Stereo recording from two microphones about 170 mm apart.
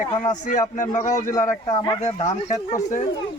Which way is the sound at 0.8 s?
45° left (ahead or behind).